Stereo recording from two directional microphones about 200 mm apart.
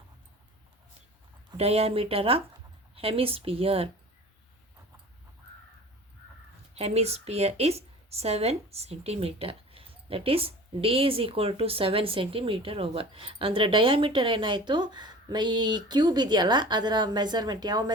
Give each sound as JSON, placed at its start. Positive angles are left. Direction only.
{"t": 1.5, "sound": "a woman's voice", "side_deg": -30}
{"t": 6.7, "sound": "a woman's voice", "side_deg": -30}